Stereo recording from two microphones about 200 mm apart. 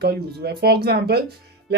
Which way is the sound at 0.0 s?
50° right (ahead or behind).